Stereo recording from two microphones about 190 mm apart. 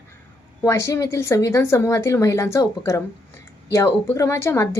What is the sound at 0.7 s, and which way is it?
Speech, 15° left (ahead or behind).